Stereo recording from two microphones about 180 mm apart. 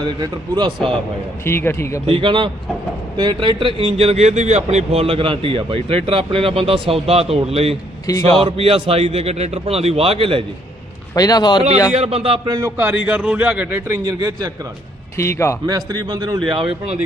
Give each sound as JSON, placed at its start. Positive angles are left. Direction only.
{"t": 0.2, "sound": "a man's voice", "side_deg": -25}
{"t": 1.5, "sound": "speech", "side_deg": 15}
{"t": 2.0, "sound": "a man's voice", "side_deg": -30}
{"t": 8.1, "sound": "speech", "side_deg": 20}
{"t": 8.4, "sound": "speech", "side_deg": -30}
{"t": 11.1, "sound": "speech", "side_deg": 20}
{"t": 11.9, "sound": "speech", "side_deg": -35}
{"t": 12.5, "sound": "a man's voice", "side_deg": -15}
{"t": 15.1, "sound": "a man's voice", "side_deg": 15}
{"t": 15.6, "sound": "a man's voice", "side_deg": -20}